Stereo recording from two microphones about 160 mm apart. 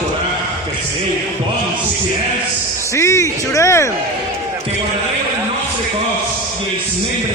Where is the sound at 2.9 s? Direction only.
20° left (ahead or behind).